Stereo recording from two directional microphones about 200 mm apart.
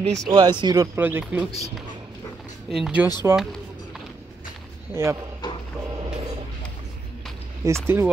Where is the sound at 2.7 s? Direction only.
5° right (ahead or behind).